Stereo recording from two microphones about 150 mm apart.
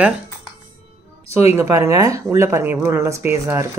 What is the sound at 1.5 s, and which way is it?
Speech, 20° right (ahead or behind).